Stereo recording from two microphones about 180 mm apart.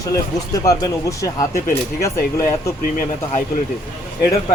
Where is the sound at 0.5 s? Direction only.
20° left (ahead or behind).